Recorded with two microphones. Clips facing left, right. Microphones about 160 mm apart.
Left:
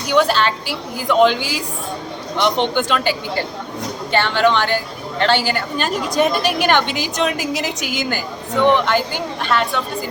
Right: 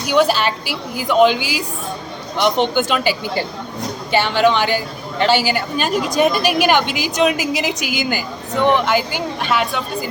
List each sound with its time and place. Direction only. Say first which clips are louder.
0.1 s a woman's voice: even; 10° right (ahead or behind)